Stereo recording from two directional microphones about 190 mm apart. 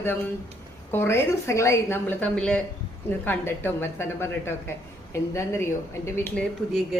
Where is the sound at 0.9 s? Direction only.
10° left (ahead or behind).